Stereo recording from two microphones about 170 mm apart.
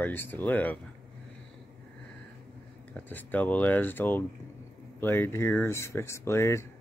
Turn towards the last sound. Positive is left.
turn(degrees=15)  # may be behind; listen again after turning